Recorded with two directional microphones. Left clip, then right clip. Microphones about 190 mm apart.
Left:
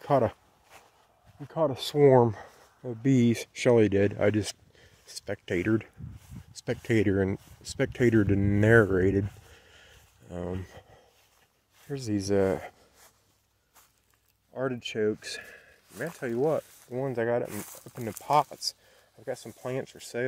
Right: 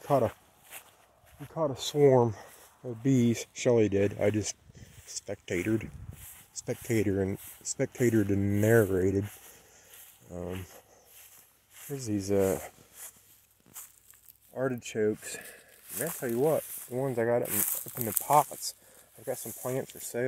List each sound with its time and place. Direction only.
0.3 s walk: 5° left (ahead or behind)
1.5 s speech: 25° left (ahead or behind)
9.7 s a sound: 15° left (ahead or behind)
11.9 s speech: 30° left (ahead or behind)
14.5 s speech: centre (ahead or behind)